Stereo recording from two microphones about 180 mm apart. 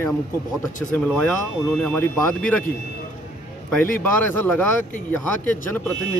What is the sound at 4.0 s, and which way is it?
Speech, 10° left (ahead or behind).